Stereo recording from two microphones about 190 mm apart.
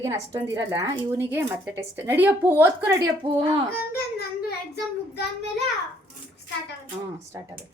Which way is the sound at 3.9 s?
55° left (ahead or behind).